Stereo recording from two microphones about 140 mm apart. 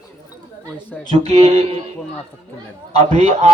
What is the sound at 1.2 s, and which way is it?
Speech, 45° right (ahead or behind).